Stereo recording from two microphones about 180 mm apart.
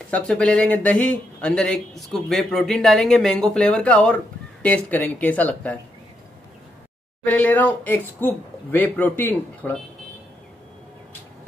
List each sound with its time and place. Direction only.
0.1 s speech: 5° left (ahead or behind)
7.2 s speech: 10° left (ahead or behind)